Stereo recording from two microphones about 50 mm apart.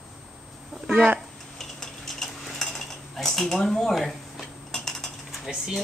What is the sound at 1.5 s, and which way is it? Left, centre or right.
Cutlery, centre.